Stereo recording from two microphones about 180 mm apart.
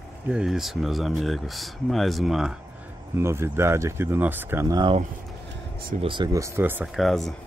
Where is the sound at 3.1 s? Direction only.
15° right (ahead or behind).